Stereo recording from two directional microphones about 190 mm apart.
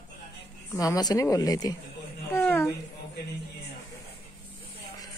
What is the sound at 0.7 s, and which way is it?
Speech, 20° left (ahead or behind).